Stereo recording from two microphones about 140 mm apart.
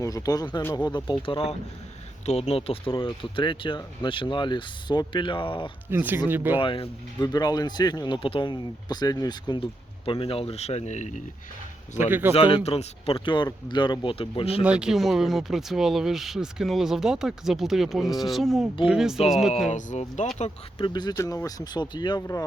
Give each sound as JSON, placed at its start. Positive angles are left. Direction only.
{"t": 0.0, "sound": "speech", "side_deg": 25}
{"t": 5.9, "sound": "speech", "side_deg": -15}
{"t": 6.6, "sound": "speech", "side_deg": 40}
{"t": 10.1, "sound": "speech", "side_deg": 40}
{"t": 12.3, "sound": "speech", "side_deg": 45}
{"t": 14.6, "sound": "speech", "side_deg": -5}
{"t": 19.5, "sound": "speech", "side_deg": 55}
{"t": 20.4, "sound": "speech", "side_deg": 35}